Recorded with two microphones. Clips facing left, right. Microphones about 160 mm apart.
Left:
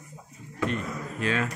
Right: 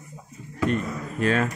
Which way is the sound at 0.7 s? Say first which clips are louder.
Right 5 dB; 45° right (ahead or behind).